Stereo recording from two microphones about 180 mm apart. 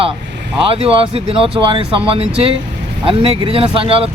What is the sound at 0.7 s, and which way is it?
Speech, 30° right (ahead or behind).